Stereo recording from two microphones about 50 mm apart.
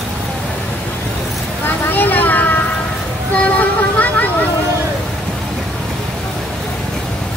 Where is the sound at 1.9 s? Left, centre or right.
Left.